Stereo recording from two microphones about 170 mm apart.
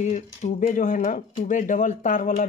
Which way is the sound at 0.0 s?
45° left (ahead or behind).